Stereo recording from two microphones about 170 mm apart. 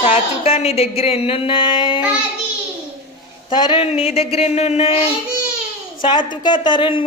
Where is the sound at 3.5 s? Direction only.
25° left (ahead or behind).